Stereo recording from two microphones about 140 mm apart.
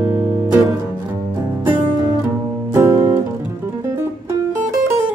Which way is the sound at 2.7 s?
20° right (ahead or behind).